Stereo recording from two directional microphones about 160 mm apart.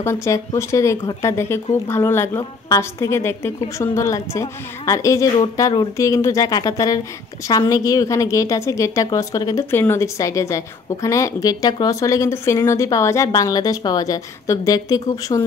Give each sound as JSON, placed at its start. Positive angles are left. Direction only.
{"t": 0.0, "sound": "a woman's voice", "side_deg": 15}